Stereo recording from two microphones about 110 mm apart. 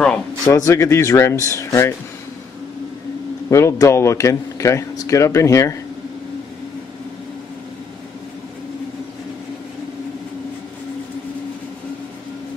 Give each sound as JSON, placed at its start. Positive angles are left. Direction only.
{"t": 0.5, "sound": "speech", "side_deg": 30}
{"t": 3.4, "sound": "speech", "side_deg": 25}